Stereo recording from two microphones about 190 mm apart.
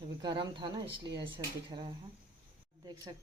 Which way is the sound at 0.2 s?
25° right (ahead or behind).